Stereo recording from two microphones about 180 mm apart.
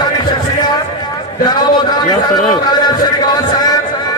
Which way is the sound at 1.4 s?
20° left (ahead or behind).